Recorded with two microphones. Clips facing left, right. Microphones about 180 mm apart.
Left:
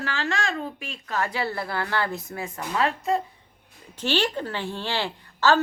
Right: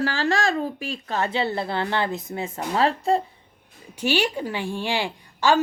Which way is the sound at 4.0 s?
10° right (ahead or behind).